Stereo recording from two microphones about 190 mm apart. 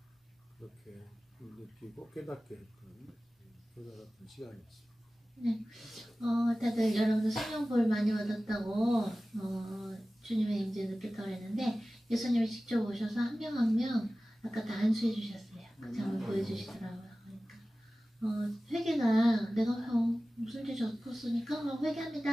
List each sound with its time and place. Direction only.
0.6 s speech: centre (ahead or behind)
3.9 s speech: centre (ahead or behind)
18.2 s speech: centre (ahead or behind)